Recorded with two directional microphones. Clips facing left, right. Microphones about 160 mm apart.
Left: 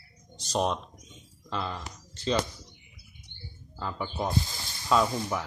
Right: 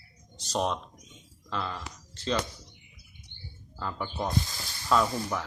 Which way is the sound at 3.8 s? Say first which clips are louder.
Left 1 dB; 5° left (ahead or behind).